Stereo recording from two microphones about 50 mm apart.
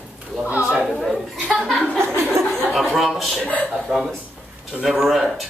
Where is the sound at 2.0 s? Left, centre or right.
Right.